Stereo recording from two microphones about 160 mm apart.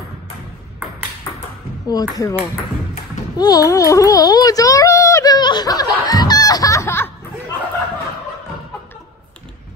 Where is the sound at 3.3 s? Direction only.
25° left (ahead or behind).